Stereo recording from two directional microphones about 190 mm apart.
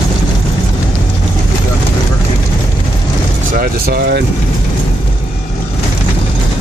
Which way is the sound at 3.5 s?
50° right (ahead or behind).